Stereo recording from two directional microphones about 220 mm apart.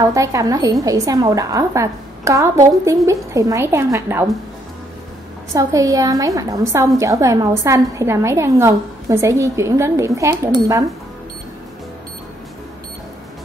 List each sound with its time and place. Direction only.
0.1 s a woman's voice: 15° right (ahead or behind)
5.5 s a woman's voice: 15° right (ahead or behind)